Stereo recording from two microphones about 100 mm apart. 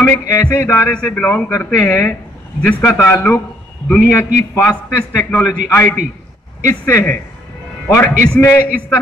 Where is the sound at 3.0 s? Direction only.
25° left (ahead or behind).